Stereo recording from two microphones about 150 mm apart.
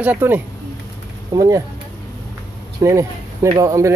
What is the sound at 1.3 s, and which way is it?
Speech, 25° right (ahead or behind).